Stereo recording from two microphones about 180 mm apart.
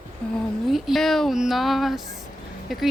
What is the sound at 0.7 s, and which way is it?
A woman's voice, centre (ahead or behind).